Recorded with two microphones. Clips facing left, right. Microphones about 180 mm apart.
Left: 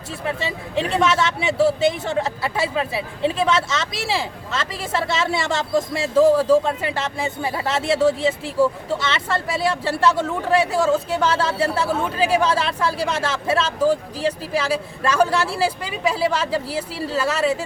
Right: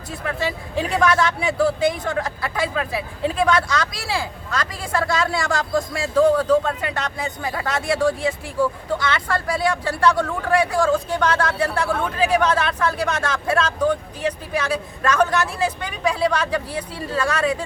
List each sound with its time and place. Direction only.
0.3 s speech: 25° left (ahead or behind)